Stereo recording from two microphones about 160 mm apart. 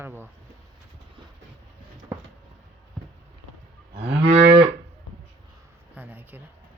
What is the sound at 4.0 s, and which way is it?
Moo, 90° right.